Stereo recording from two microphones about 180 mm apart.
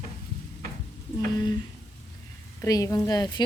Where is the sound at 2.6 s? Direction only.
15° left (ahead or behind).